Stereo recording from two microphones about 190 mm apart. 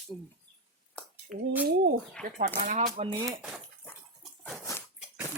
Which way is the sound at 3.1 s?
20° right (ahead or behind).